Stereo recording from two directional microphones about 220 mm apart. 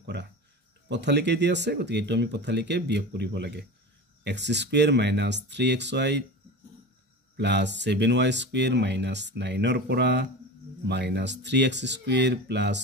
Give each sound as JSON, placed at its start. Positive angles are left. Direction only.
{"t": 0.0, "sound": "cricket", "side_deg": -50}
{"t": 0.8, "sound": "speech", "side_deg": -50}
{"t": 7.3, "sound": "speech", "side_deg": -50}